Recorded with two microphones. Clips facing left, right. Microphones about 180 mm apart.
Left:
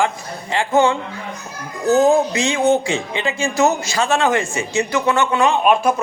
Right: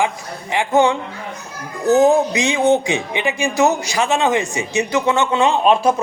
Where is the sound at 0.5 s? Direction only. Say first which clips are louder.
Right 1 dB; 15° right (ahead or behind).